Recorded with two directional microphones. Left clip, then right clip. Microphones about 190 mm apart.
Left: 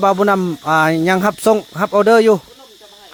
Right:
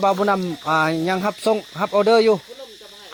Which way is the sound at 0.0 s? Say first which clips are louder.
Left 5 dB; 45° left (ahead or behind).